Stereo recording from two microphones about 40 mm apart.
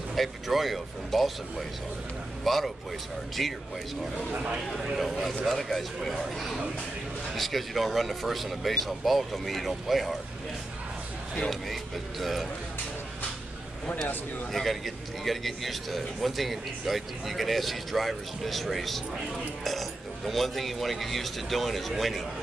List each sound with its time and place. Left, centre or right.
0.1 s a man's voice: centre
2.4 s a man's voice: centre
4.3 s speech: right
4.7 s a man's voice: centre
11.7 s a man's voice: centre
14.5 s a man's voice: centre